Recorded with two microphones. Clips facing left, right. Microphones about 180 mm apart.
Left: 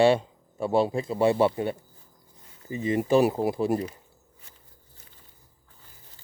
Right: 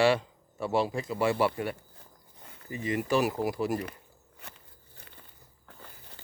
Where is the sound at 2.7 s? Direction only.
25° left (ahead or behind).